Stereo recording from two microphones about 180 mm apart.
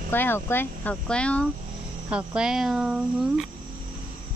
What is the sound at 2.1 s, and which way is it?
Speech, 5° right (ahead or behind).